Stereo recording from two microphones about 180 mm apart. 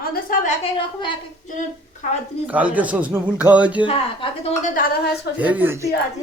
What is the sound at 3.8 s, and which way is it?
Speech, 30° left (ahead or behind).